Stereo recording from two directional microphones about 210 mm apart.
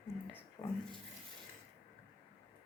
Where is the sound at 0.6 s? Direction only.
20° left (ahead or behind).